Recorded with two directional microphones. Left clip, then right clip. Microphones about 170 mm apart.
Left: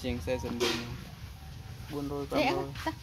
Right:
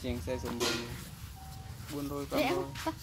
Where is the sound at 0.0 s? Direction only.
40° left (ahead or behind).